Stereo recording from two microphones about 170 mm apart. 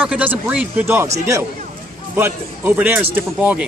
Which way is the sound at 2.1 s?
10° right (ahead or behind).